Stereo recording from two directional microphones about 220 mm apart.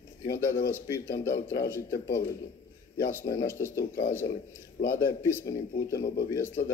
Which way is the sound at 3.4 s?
10° left (ahead or behind).